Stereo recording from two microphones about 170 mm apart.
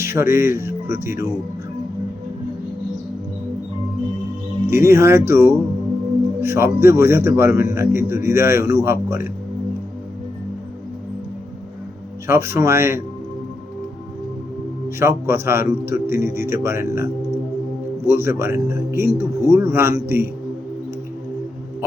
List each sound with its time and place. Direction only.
0.0 s speech: 15° right (ahead or behind)
4.6 s a man's voice: 15° right (ahead or behind)
12.3 s a man's voice: 15° right (ahead or behind)
14.8 s a man's voice: 15° right (ahead or behind)
18.1 s a man's voice: 15° right (ahead or behind)